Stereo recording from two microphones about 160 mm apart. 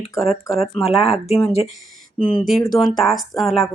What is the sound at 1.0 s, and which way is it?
Speech, 40° left (ahead or behind).